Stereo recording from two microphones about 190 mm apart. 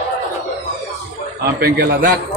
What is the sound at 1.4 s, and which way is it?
Speech, 55° right (ahead or behind).